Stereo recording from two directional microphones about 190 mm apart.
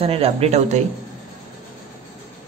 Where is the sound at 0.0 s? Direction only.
30° right (ahead or behind).